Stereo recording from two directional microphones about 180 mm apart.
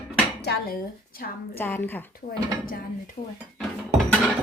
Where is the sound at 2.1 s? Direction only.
55° left (ahead or behind).